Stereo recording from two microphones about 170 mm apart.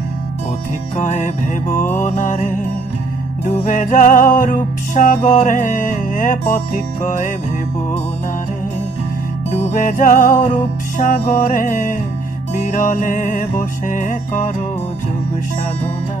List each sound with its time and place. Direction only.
0.9 s music: 45° left (ahead or behind)
9.5 s music: 45° left (ahead or behind)